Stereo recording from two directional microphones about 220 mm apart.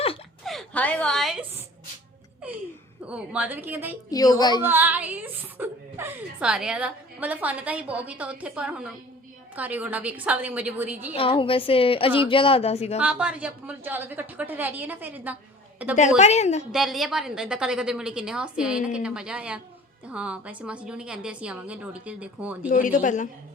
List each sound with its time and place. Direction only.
0.4 s a woman's voice: 5° left (ahead or behind)
3.1 s speech: 5° right (ahead or behind)
4.1 s a woman's voice: 15° left (ahead or behind)
4.6 s speech: 10° right (ahead or behind)
11.1 s a woman's voice: 25° left (ahead or behind)
13.0 s speech: 5° right (ahead or behind)
16.0 s a woman's voice: 30° left (ahead or behind)
16.7 s a woman's voice: centre (ahead or behind)
22.7 s a woman's voice: 40° left (ahead or behind)